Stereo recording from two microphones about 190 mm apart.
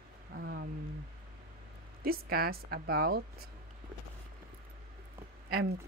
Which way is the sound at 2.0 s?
50° right (ahead or behind).